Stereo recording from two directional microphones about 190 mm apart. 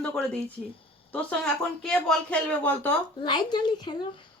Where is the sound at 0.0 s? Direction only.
5° left (ahead or behind).